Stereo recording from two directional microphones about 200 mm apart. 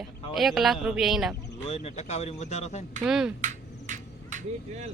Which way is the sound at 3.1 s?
5° right (ahead or behind).